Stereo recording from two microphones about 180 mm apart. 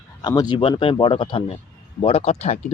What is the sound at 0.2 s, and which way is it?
Speech, 25° left (ahead or behind).